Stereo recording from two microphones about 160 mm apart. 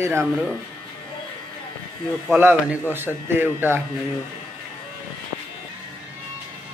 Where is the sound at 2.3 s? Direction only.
10° right (ahead or behind).